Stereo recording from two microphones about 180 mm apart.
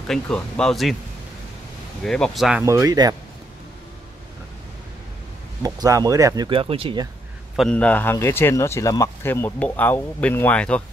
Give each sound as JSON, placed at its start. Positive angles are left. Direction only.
{"t": 0.1, "sound": "speech", "side_deg": 5}
{"t": 2.0, "sound": "speech", "side_deg": 5}
{"t": 2.6, "sound": "speech", "side_deg": -15}
{"t": 5.6, "sound": "speech", "side_deg": -20}
{"t": 7.5, "sound": "speech", "side_deg": 5}